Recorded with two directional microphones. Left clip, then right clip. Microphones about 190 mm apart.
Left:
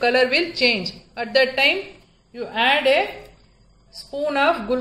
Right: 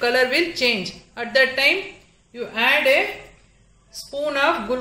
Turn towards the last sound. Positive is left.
turn(degrees=0)  # may be behind; listen again after turning